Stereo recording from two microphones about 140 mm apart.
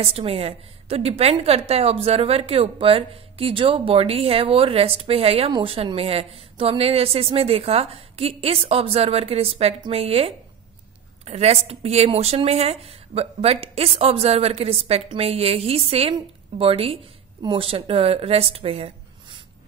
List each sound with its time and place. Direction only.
0.0 s a woman's voice: 45° right (ahead or behind)